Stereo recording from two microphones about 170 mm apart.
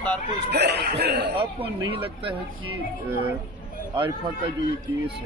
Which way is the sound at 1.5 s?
30° right (ahead or behind).